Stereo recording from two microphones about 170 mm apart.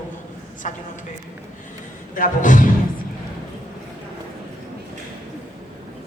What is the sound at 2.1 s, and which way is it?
Speech, 50° left (ahead or behind).